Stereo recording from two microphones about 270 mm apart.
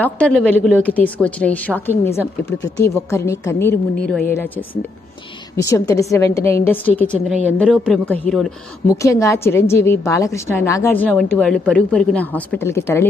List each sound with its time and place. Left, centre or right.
0.0 s a woman's voice: centre